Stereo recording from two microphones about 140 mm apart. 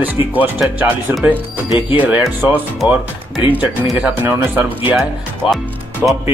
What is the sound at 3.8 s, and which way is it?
Speech, 10° right (ahead or behind).